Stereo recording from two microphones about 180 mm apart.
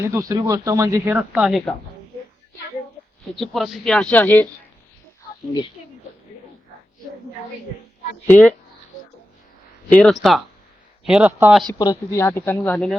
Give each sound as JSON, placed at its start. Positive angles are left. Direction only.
{"t": 0.0, "sound": "speech", "side_deg": -15}
{"t": 1.3, "sound": "speech", "side_deg": -5}
{"t": 3.3, "sound": "speech", "side_deg": 0}
{"t": 8.3, "sound": "speech", "side_deg": 10}
{"t": 9.9, "sound": "speech", "side_deg": 5}
{"t": 11.7, "sound": "speech", "side_deg": 20}